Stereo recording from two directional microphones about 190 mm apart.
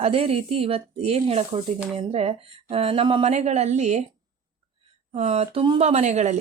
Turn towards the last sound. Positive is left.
turn(degrees=-35)  # may be behind; listen again after turning